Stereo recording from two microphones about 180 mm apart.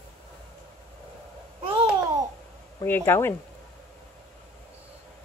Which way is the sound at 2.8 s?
10° left (ahead or behind).